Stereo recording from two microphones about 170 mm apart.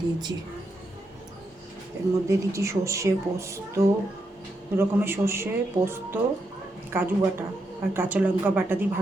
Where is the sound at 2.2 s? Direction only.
15° right (ahead or behind).